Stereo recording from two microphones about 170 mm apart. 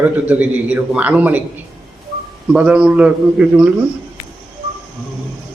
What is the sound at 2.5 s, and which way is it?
A man's voice, 5° right (ahead or behind).